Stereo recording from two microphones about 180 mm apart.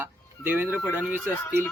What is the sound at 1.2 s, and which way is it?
Speech, 10° left (ahead or behind).